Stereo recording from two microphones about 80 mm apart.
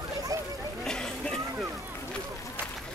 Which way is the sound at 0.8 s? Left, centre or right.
Centre.